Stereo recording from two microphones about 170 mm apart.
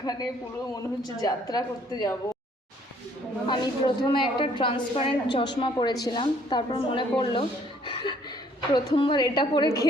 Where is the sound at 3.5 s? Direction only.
25° left (ahead or behind).